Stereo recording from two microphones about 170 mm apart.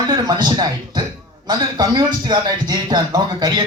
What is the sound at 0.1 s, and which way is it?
A man's voice, 25° right (ahead or behind).